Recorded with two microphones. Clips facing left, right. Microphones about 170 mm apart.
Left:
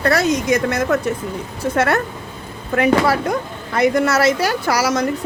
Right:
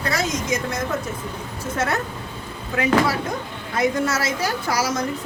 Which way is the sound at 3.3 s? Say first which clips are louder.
Left 6 dB; 70° left (ahead or behind).